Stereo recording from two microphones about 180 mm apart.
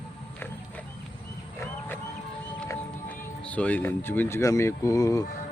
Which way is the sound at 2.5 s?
10° left (ahead or behind).